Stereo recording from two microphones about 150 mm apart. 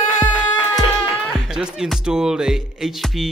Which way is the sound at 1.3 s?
Centre (ahead or behind).